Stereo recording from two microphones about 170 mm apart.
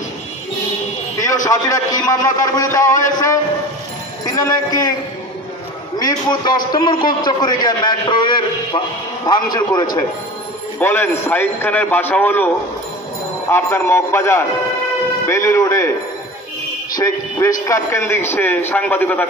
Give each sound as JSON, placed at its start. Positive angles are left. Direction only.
{"t": 1.1, "sound": "a man's voice", "side_deg": 20}
{"t": 4.3, "sound": "a man's voice", "side_deg": 20}
{"t": 5.9, "sound": "a man's voice", "side_deg": 25}
{"t": 13.5, "sound": "a man's voice", "side_deg": 10}
{"t": 16.9, "sound": "a man's voice", "side_deg": 20}